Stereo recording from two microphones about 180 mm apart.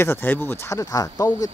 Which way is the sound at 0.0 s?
10° left (ahead or behind).